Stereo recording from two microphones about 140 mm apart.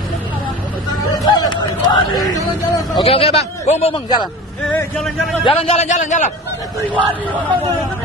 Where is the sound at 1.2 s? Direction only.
30° left (ahead or behind).